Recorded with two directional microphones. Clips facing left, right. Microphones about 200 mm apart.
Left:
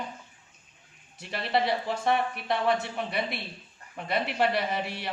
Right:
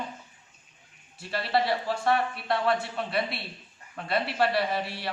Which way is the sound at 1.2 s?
20° left (ahead or behind).